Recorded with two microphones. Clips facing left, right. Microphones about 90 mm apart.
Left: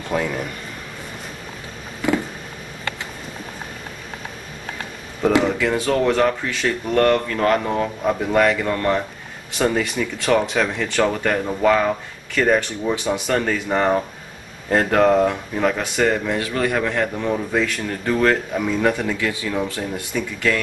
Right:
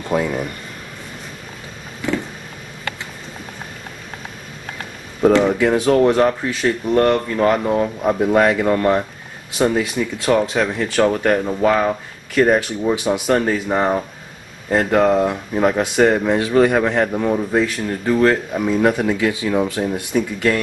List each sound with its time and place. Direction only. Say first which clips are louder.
0.1 s speech: right 3 dB; 10° right (ahead or behind)
5.6 s speech: right 5 dB; 20° right (ahead or behind)